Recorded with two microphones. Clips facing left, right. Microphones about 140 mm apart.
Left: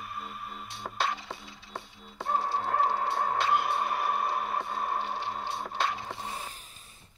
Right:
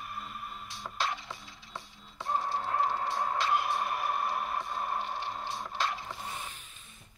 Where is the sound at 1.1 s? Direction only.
40° left (ahead or behind).